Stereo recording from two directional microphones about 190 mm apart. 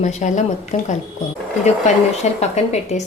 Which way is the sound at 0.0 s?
40° left (ahead or behind).